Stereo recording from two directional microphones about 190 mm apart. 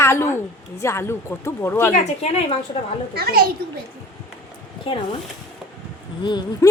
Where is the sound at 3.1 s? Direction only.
55° right (ahead or behind).